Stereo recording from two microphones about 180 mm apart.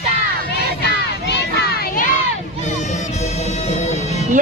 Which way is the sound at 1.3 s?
65° left (ahead or behind).